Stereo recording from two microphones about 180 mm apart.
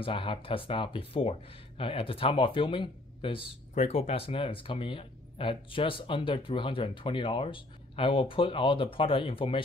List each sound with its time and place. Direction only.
0.0 s speech: 30° left (ahead or behind)